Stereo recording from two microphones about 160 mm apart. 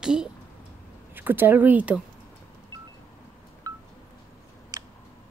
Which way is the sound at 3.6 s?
20° right (ahead or behind).